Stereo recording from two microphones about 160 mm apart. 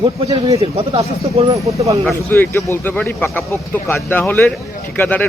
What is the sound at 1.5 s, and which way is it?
Speech, 20° right (ahead or behind).